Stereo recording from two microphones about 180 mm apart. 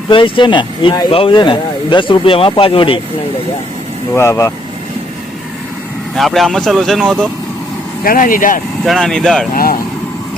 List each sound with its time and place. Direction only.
0.1 s speech: 30° left (ahead or behind)
4.1 s speech: 15° left (ahead or behind)
6.1 s speech: centre (ahead or behind)
8.0 s speech: 50° left (ahead or behind)
8.8 s speech: centre (ahead or behind)
9.6 s speech: 55° left (ahead or behind)